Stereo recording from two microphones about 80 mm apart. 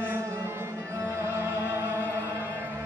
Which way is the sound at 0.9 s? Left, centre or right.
Right.